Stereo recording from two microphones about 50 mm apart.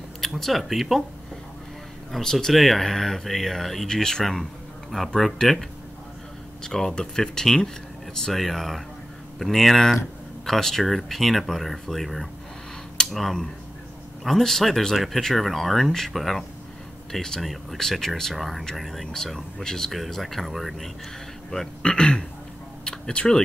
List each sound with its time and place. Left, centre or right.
0.4 s speech: centre
2.1 s speech: centre
21.5 s speech: centre